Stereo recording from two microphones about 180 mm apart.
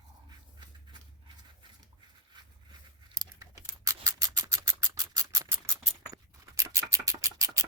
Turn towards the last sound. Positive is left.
turn(degrees=-15)  # may be behind; listen again after turning